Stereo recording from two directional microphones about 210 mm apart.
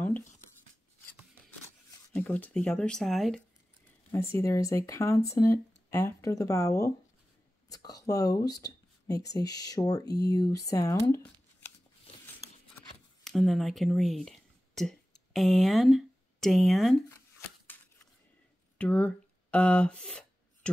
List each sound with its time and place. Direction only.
2.1 s speech: 10° left (ahead or behind)
4.1 s speech: 15° left (ahead or behind)
13.2 s speech: centre (ahead or behind)
18.8 s a sound: 5° left (ahead or behind)